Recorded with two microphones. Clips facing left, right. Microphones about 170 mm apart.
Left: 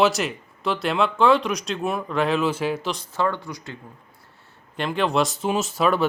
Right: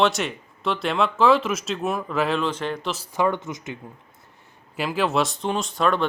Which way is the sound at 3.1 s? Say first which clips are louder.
Right 3 dB; 15° right (ahead or behind).